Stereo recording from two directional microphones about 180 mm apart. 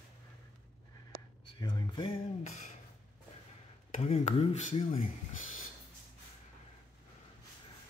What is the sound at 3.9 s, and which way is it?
Speech, 35° left (ahead or behind).